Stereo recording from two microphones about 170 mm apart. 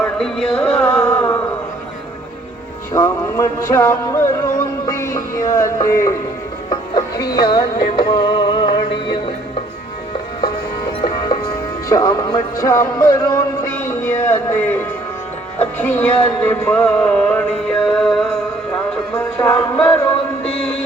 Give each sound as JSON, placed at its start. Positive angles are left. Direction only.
{"t": 0.0, "sound": "a sound", "side_deg": 0}
{"t": 2.9, "sound": "music", "side_deg": 15}
{"t": 11.9, "sound": "music", "side_deg": 20}
{"t": 15.8, "sound": "a sound", "side_deg": 10}
{"t": 19.1, "sound": "music", "side_deg": 15}
{"t": 20.4, "sound": "mantra", "side_deg": 10}